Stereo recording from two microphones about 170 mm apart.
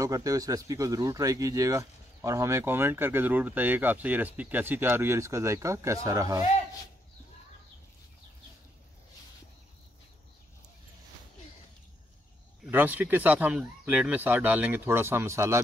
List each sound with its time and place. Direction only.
0.0 s speech: 20° right (ahead or behind)
12.6 s speech: 10° right (ahead or behind)